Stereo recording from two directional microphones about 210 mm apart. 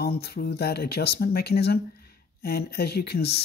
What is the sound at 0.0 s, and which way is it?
Speech, 50° left (ahead or behind).